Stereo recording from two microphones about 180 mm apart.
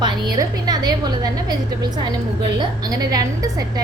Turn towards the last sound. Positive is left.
turn(degrees=-20)  # may be behind; listen again after turning